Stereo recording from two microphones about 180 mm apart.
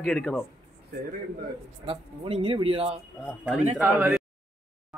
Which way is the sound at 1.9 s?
30° right (ahead or behind).